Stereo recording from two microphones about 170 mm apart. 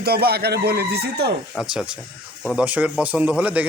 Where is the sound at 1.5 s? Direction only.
5° right (ahead or behind).